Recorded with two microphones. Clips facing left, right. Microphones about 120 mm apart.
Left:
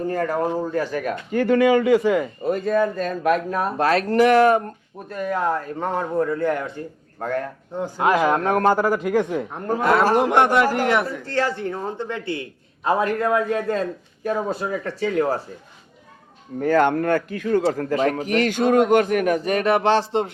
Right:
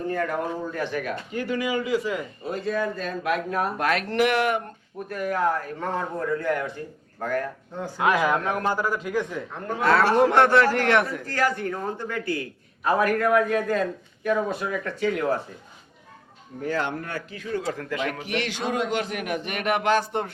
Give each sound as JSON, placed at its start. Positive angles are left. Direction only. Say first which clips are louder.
{"t": 0.1, "sound": "a man's voice", "louder": "left 4 dB", "side_deg": 40}
{"t": 1.3, "sound": "a man's voice", "louder": "left 11 dB", "side_deg": 55}
{"t": 5.0, "sound": "a man's voice", "louder": "left 1 dB", "side_deg": 25}
{"t": 8.4, "sound": "a man's voice", "louder": "left 7 dB", "side_deg": 50}
{"t": 9.7, "sound": "a man's voice", "louder": "left 6 dB", "side_deg": 40}
{"t": 10.2, "sound": "speech", "louder": "left 1 dB", "side_deg": 15}
{"t": 11.3, "sound": "a man's voice", "louder": "left 2 dB", "side_deg": 25}
{"t": 16.6, "sound": "a man's voice", "louder": "left 10 dB", "side_deg": 55}
{"t": 17.6, "sound": "a man's voice", "louder": "left 7 dB", "side_deg": 35}